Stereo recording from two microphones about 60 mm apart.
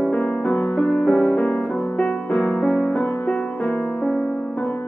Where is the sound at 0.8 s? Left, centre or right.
Centre.